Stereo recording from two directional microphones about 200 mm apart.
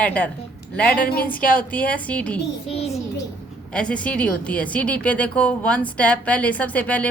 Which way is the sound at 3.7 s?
5° left (ahead or behind).